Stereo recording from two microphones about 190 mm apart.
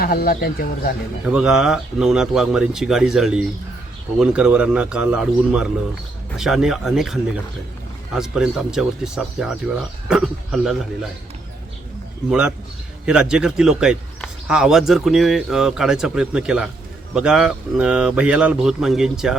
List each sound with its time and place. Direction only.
0.0 s speech: 50° left (ahead or behind)
1.2 s a man's voice: 5° right (ahead or behind)
12.3 s a man's voice: 5° right (ahead or behind)